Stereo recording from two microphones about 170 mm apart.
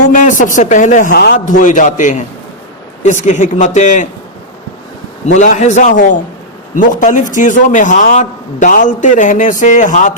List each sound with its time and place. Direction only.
0.1 s a man's voice: 50° left (ahead or behind)
1.1 s a man's voice: 70° left (ahead or behind)
1.5 s a man's voice: 50° left (ahead or behind)
5.2 s a man's voice: 45° left (ahead or behind)